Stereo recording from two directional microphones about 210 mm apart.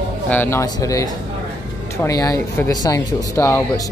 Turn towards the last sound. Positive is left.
turn(degrees=10)  # may be behind; listen again after turning